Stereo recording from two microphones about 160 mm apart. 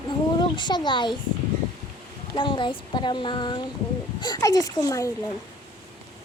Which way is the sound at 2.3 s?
30° left (ahead or behind).